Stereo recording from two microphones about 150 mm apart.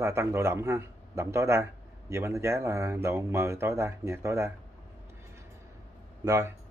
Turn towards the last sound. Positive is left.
turn(degrees=-15)  # may be behind; listen again after turning